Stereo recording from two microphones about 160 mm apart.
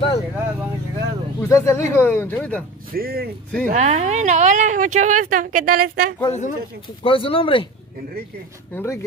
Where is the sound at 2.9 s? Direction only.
70° right (ahead or behind).